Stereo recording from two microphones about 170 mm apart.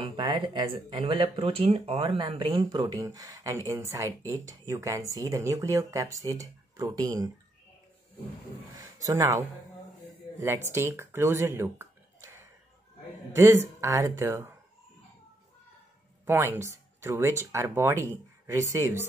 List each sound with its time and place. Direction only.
0.0 s speech: 30° right (ahead or behind)
9.0 s speech: 20° right (ahead or behind)
10.7 s speech: 15° right (ahead or behind)
16.3 s speech: 15° right (ahead or behind)